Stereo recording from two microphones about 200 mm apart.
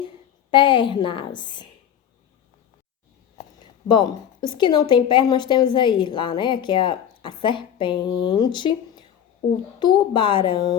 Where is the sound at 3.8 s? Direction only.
20° left (ahead or behind).